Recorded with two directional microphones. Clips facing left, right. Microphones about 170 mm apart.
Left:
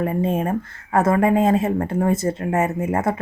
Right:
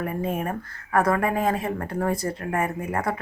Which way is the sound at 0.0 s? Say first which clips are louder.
Left 6 dB; 25° left (ahead or behind).